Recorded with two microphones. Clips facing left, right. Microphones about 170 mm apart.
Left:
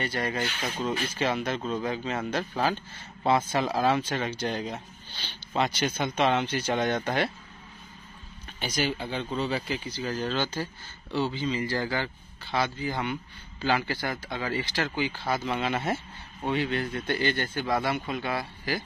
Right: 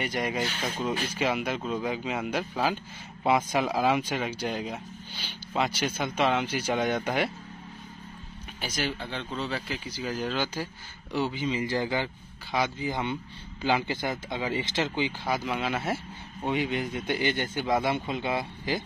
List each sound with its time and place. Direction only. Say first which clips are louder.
0.0 s speech: even; 15° right (ahead or behind)
8.5 s speech: left 3 dB; centre (ahead or behind)
9.8 s speech: left 1 dB; 10° right (ahead or behind)
16.4 s speech: even; 15° right (ahead or behind)